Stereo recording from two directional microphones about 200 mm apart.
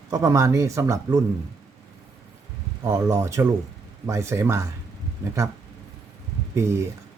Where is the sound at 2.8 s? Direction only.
15° right (ahead or behind).